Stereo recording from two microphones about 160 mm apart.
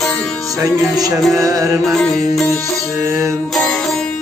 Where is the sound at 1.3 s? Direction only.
20° right (ahead or behind).